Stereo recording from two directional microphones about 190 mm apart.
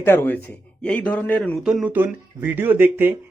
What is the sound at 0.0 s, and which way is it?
A man's voice, 10° left (ahead or behind).